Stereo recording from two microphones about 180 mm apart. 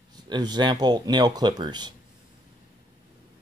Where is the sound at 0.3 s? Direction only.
25° right (ahead or behind).